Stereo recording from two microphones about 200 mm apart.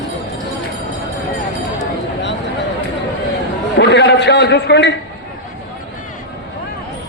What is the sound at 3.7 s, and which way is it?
A man's voice, 60° left (ahead or behind).